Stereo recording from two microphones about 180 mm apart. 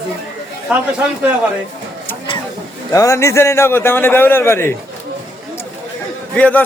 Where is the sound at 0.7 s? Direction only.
10° right (ahead or behind).